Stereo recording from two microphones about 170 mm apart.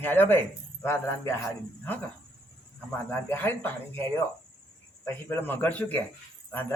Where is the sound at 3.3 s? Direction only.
10° left (ahead or behind).